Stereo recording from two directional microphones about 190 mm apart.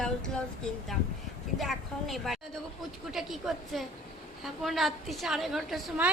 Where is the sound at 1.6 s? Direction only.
Centre (ahead or behind).